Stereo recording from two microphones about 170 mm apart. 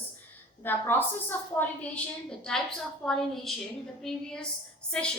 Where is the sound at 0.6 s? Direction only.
10° left (ahead or behind).